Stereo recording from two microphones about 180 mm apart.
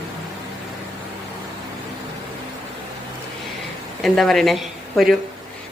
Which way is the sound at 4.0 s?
Centre (ahead or behind).